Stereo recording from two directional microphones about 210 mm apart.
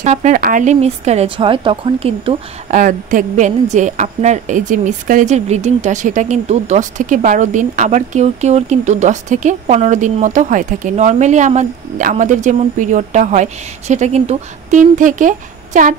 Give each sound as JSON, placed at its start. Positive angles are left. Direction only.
{"t": 0.0, "sound": "speech", "side_deg": -35}